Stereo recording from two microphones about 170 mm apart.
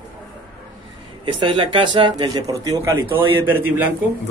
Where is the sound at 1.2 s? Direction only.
25° right (ahead or behind); by 3.8 s 10° right (ahead or behind).